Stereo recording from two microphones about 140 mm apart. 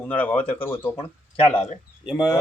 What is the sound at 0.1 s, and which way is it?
Speech, 10° left (ahead or behind).